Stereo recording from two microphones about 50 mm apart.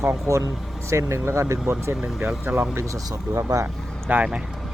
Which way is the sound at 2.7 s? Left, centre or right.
Right.